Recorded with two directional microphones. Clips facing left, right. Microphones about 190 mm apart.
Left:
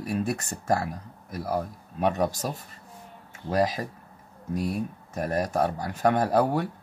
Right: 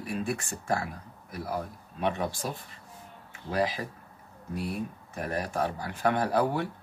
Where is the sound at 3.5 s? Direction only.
40° left (ahead or behind).